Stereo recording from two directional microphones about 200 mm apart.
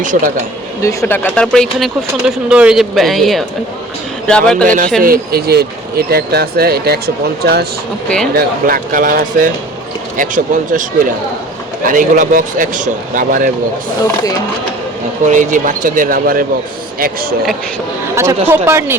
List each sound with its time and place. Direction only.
0.0 s a man's voice: 40° right (ahead or behind)
0.8 s speech: 15° left (ahead or behind)
4.6 s a man's voice: 40° right (ahead or behind)
15.3 s a man's voice: 40° right (ahead or behind)
18.1 s speech: 15° right (ahead or behind)